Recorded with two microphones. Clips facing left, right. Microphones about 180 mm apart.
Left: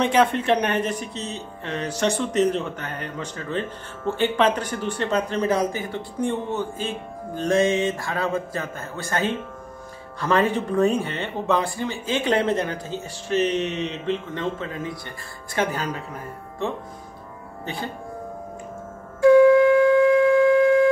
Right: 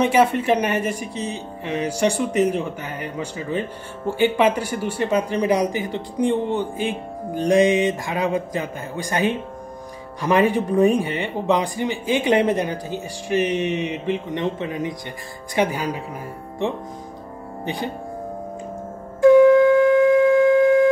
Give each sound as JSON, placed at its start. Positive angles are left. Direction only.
{"t": 0.0, "sound": "speech", "side_deg": -10}
{"t": 17.6, "sound": "speech", "side_deg": -15}
{"t": 19.2, "sound": "wind instrument", "side_deg": -20}
{"t": 19.7, "sound": "a sound", "side_deg": -20}